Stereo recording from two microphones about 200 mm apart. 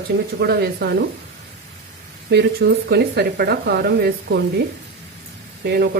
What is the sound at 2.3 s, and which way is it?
Speech, 55° right (ahead or behind).